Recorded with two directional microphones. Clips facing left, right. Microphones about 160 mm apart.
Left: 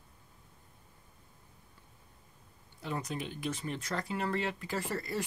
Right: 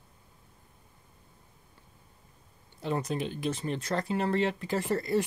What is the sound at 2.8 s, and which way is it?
Speech, 30° right (ahead or behind).